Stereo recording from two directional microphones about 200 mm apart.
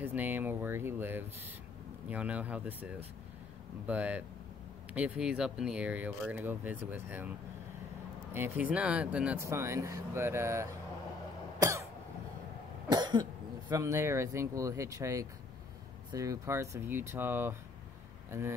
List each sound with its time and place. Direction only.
0.0 s speech: 10° right (ahead or behind)
8.3 s speech: 10° right (ahead or behind)
12.9 s speech: 20° right (ahead or behind)